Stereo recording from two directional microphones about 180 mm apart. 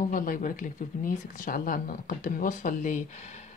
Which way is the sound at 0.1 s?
45° left (ahead or behind).